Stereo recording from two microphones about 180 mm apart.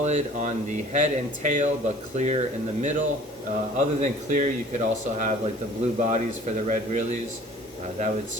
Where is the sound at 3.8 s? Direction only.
45° right (ahead or behind).